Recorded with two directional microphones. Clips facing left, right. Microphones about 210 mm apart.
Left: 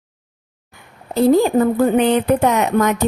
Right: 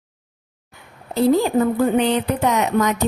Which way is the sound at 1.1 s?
50° left (ahead or behind).